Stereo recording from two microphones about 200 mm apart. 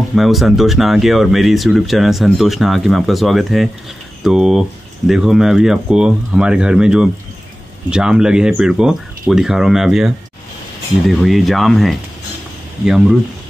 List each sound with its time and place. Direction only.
0.1 s speech: centre (ahead or behind)